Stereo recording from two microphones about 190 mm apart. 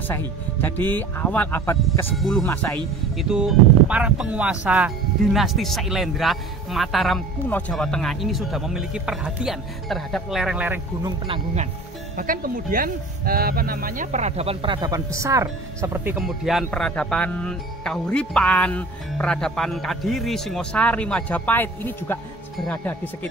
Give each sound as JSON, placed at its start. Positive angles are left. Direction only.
{"t": 0.1, "sound": "speech", "side_deg": 10}
{"t": 2.1, "sound": "speech", "side_deg": 0}
{"t": 11.0, "sound": "speech", "side_deg": -25}
{"t": 12.2, "sound": "speech", "side_deg": -45}